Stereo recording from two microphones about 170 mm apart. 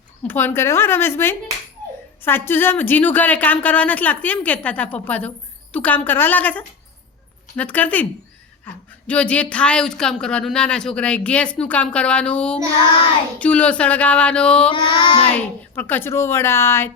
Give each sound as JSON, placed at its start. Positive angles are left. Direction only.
{"t": 0.3, "sound": "a woman's voice", "side_deg": 15}
{"t": 14.7, "sound": "carnatic music", "side_deg": 30}
{"t": 15.4, "sound": "a woman's voice", "side_deg": 10}